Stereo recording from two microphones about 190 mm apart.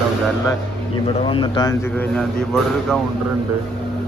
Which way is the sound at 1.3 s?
25° left (ahead or behind).